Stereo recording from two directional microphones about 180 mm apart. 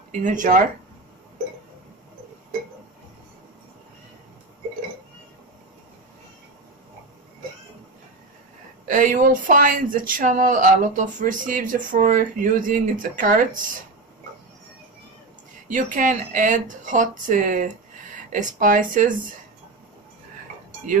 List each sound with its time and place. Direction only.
0.1 s speech: 45° right (ahead or behind)
8.8 s speech: 45° right (ahead or behind)
15.7 s speech: 45° right (ahead or behind)